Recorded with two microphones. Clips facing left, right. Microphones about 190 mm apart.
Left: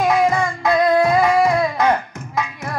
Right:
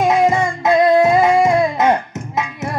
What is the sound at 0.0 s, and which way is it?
Music, 25° right (ahead or behind).